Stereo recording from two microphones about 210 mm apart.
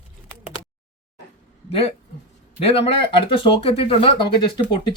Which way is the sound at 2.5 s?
30° left (ahead or behind).